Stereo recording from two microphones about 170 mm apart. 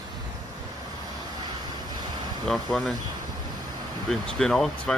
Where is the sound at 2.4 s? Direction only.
Centre (ahead or behind).